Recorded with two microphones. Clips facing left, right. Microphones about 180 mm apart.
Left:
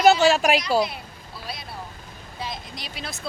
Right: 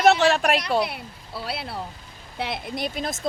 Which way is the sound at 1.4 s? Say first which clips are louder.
Right 5 dB; 70° right (ahead or behind).